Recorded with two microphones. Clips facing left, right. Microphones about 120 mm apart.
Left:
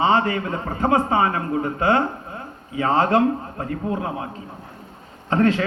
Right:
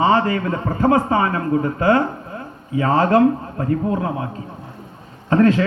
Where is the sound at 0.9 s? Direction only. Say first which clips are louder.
Right 2 dB; 25° left (ahead or behind).